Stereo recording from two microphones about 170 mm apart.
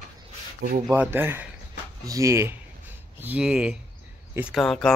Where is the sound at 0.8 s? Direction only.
10° right (ahead or behind).